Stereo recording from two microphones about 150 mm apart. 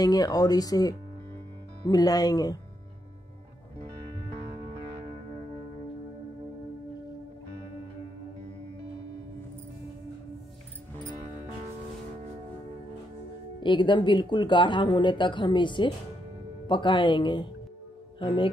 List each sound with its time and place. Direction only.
0.0 s speech: 25° left (ahead or behind)
13.6 s speech: 30° left (ahead or behind)